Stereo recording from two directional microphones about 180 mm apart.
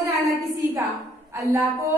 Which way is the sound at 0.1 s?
15° right (ahead or behind).